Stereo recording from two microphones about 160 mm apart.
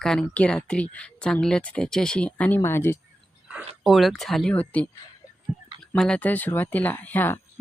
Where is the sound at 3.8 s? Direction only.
Centre (ahead or behind).